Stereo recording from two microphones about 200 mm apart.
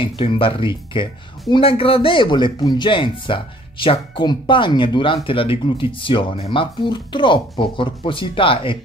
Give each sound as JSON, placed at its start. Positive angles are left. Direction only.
{"t": 0.0, "sound": "speech", "side_deg": 25}